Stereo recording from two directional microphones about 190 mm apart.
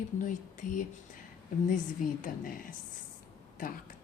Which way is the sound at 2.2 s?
45° left (ahead or behind).